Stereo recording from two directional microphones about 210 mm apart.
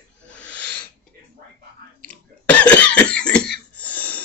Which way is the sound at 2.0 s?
5° left (ahead or behind).